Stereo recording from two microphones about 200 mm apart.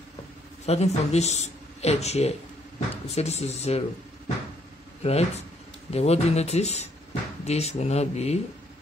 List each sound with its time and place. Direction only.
0.7 s speech: 35° left (ahead or behind)
5.0 s speech: 30° left (ahead or behind)